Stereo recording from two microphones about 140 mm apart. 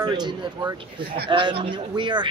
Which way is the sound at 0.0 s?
30° right (ahead or behind).